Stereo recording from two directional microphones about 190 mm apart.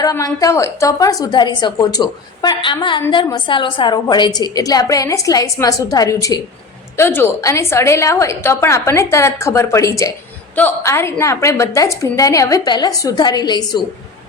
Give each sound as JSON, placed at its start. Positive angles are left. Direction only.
{"t": 0.0, "sound": "a woman's voice", "side_deg": 15}